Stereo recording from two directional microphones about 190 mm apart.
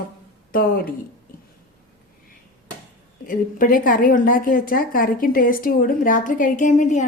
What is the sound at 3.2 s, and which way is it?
Speech, 50° left (ahead or behind).